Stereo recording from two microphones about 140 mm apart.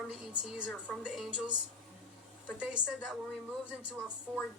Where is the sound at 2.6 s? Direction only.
5° right (ahead or behind).